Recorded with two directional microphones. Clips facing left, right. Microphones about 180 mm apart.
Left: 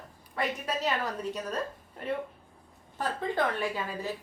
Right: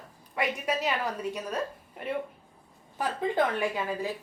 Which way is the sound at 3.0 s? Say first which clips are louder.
Right 3 dB; 15° right (ahead or behind).